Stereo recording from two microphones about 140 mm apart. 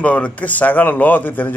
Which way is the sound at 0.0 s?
10° left (ahead or behind).